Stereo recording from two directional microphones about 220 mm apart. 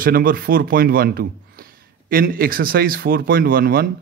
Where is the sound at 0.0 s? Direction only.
40° right (ahead or behind).